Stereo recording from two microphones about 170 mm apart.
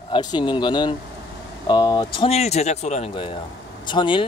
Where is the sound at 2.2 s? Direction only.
40° left (ahead or behind).